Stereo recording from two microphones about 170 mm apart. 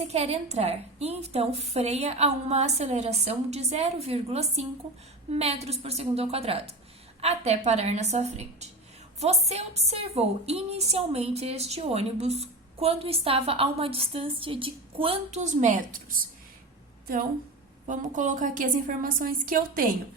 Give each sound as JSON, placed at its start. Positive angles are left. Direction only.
{"t": 0.0, "sound": "a woman's voice", "side_deg": -40}
{"t": 17.8, "sound": "a woman's voice", "side_deg": -45}